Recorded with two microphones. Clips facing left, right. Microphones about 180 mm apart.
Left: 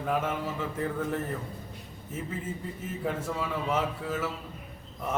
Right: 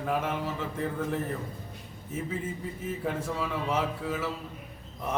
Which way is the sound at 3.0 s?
Centre (ahead or behind).